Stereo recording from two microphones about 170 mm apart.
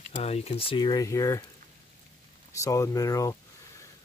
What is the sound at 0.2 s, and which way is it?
Speech, 40° left (ahead or behind).